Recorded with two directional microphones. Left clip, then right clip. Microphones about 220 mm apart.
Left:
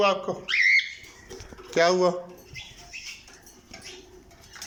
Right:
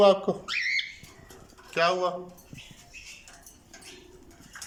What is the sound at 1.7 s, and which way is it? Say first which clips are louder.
Speech: left 4 dB; 15° left (ahead or behind).